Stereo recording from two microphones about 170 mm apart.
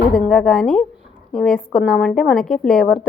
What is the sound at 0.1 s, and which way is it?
A woman's voice, centre (ahead or behind).